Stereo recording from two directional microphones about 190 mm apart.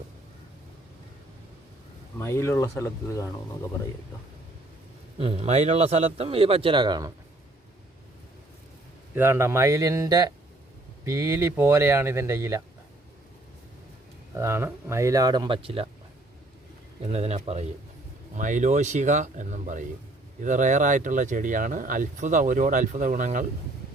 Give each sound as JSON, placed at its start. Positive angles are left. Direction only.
{"t": 2.1, "sound": "speech", "side_deg": 15}
{"t": 5.1, "sound": "speech", "side_deg": -30}
{"t": 9.1, "sound": "speech", "side_deg": -10}
{"t": 14.3, "sound": "speech", "side_deg": -15}
{"t": 17.0, "sound": "speech", "side_deg": -35}